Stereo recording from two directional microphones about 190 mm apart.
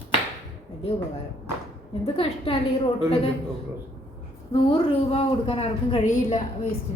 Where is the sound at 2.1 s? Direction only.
30° left (ahead or behind).